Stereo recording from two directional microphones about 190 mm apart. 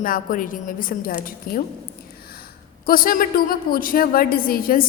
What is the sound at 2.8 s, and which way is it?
A woman's voice, 50° left (ahead or behind).